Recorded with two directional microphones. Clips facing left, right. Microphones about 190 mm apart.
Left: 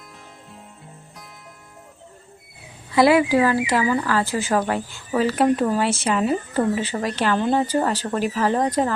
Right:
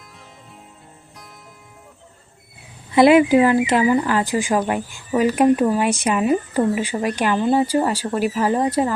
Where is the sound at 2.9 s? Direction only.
20° right (ahead or behind).